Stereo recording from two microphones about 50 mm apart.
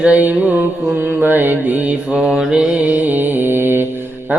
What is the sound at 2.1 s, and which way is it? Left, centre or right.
Mantra, centre.